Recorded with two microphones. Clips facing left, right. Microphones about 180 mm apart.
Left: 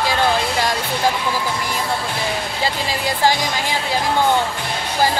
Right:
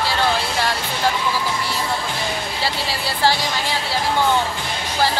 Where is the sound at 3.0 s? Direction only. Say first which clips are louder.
Left 2 dB; 15° left (ahead or behind).